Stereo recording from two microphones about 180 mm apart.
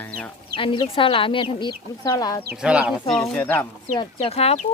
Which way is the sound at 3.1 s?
5° left (ahead or behind).